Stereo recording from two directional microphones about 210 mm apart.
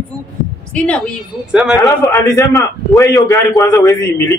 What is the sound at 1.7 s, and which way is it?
A man's voice, 15° left (ahead or behind).